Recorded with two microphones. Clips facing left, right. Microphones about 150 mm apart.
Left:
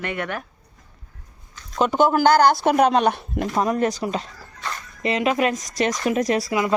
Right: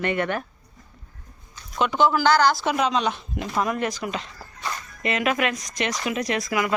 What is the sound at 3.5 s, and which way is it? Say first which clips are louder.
A woman's voice: left 3 dB; 35° left (ahead or behind).